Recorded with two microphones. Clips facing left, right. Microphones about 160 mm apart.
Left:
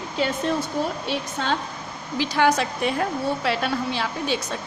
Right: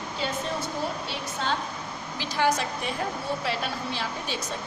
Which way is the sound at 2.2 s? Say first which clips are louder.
Left 5 dB; 75° left (ahead or behind).